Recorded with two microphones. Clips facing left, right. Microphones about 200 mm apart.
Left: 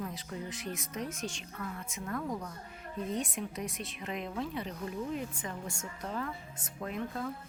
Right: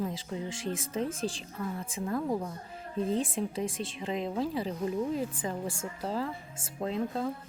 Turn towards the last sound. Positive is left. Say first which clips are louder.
# right 5 dB
turn(degrees=-25)  # may be behind; listen again after turning